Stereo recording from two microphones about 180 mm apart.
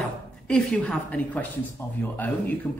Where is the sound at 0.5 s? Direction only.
5° left (ahead or behind).